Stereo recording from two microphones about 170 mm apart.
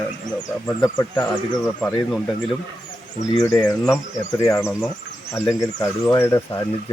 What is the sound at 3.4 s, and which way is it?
Speech, 15° left (ahead or behind).